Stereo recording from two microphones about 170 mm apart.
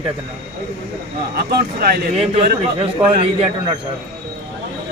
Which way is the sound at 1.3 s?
70° right (ahead or behind).